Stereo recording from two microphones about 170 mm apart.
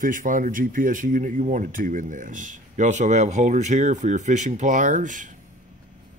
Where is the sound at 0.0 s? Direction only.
50° right (ahead or behind).